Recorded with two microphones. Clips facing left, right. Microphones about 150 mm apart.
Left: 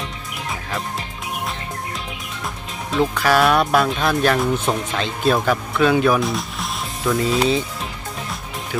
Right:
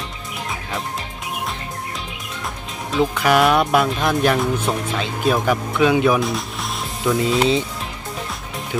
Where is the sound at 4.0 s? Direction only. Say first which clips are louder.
Even; 20° right (ahead or behind).